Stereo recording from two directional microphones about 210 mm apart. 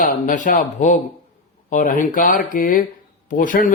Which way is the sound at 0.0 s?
40° left (ahead or behind).